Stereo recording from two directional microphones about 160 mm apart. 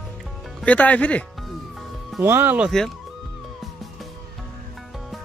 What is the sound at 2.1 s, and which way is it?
Speech, 10° right (ahead or behind).